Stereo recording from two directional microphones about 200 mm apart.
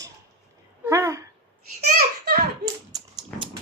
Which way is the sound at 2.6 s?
20° right (ahead or behind).